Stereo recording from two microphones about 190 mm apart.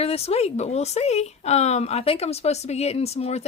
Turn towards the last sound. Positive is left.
turn(degrees=35)  # may be behind; listen again after turning